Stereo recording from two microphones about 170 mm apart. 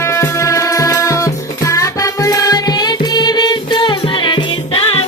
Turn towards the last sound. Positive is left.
turn(degrees=30)  # may be behind; listen again after turning